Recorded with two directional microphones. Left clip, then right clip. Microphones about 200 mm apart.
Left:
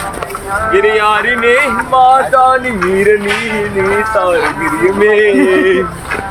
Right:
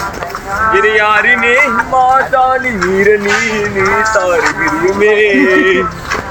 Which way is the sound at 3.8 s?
50° right (ahead or behind).